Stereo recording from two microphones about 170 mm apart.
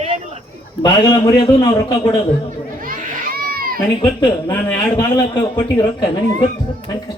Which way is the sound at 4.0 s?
20° left (ahead or behind).